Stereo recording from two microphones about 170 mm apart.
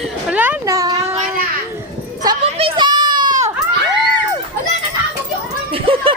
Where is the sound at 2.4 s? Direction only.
30° right (ahead or behind).